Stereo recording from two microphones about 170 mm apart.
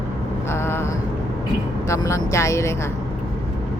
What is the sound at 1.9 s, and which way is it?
Speech, 15° left (ahead or behind).